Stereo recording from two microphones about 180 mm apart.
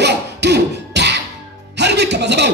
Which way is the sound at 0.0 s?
70° right (ahead or behind).